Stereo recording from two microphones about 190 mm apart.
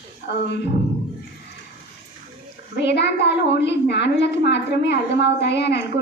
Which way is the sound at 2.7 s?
60° left (ahead or behind).